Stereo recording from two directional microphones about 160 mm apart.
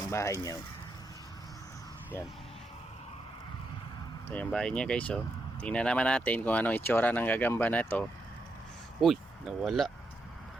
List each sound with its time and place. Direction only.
0.1 s speech: 20° left (ahead or behind)
4.3 s speech: 5° left (ahead or behind)